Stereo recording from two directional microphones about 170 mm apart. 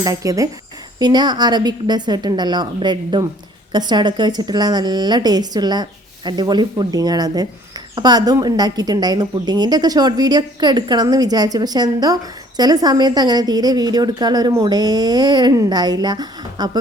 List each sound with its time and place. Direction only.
0.0 s a woman's voice: 20° right (ahead or behind)